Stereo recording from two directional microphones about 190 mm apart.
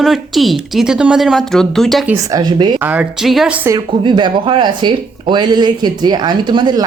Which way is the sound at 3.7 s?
25° right (ahead or behind).